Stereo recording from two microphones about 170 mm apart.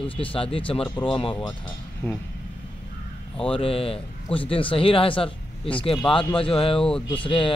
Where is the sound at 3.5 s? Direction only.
35° left (ahead or behind).